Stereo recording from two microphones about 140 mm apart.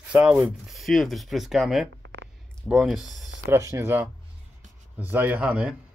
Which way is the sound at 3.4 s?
20° right (ahead or behind).